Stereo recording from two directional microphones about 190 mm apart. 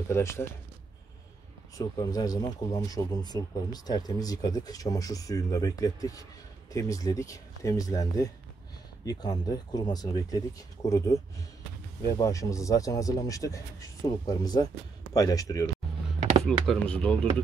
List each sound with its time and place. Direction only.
0.1 s speech: 15° left (ahead or behind)
1.8 s speech: 20° left (ahead or behind)
16.6 s speech: 5° left (ahead or behind)